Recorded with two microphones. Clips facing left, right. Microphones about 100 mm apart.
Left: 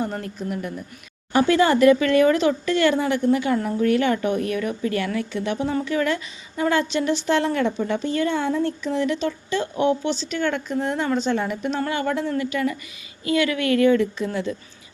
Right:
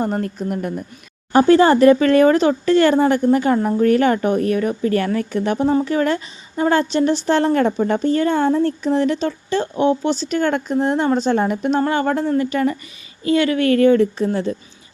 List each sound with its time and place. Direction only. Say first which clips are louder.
0.0 s speech: right 6 dB; 45° right (ahead or behind)
1.3 s speech: right 6 dB; 35° right (ahead or behind)
10.1 s speech: right 5 dB; 45° right (ahead or behind)